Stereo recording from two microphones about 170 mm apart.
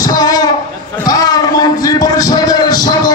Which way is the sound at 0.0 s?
20° left (ahead or behind).